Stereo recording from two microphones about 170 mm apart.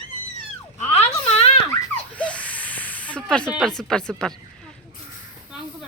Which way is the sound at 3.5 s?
5° left (ahead or behind).